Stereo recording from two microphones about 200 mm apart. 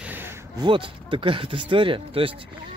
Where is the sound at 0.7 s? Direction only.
25° right (ahead or behind).